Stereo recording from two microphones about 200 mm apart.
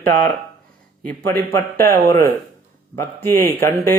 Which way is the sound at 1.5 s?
10° left (ahead or behind).